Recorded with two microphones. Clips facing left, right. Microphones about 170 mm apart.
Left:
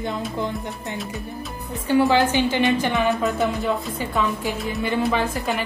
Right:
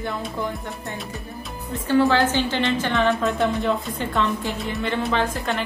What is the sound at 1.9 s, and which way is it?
A woman's voice, 15° left (ahead or behind).